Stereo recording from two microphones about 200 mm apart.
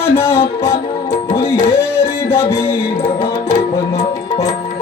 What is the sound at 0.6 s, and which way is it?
Music, 15° left (ahead or behind).